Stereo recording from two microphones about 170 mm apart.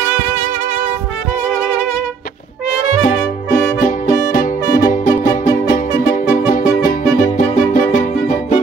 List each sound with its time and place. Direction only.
3.8 s music: 55° left (ahead or behind)